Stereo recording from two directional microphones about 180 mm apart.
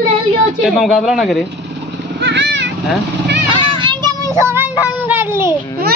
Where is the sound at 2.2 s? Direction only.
75° right (ahead or behind).